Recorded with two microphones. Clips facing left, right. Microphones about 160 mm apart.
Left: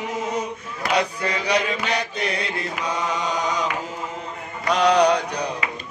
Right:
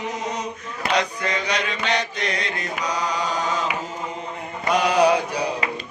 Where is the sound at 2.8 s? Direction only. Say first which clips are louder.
Right 1 dB; 25° left (ahead or behind).